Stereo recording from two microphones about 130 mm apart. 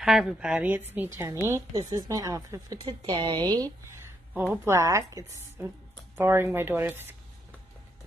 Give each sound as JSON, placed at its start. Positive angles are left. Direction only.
{"t": 0.0, "sound": "a woman's voice", "side_deg": -5}
{"t": 2.8, "sound": "a woman's voice", "side_deg": -40}